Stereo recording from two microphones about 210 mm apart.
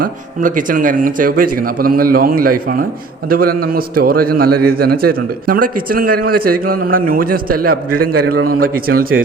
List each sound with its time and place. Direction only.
0.0 s a man's voice: 40° right (ahead or behind)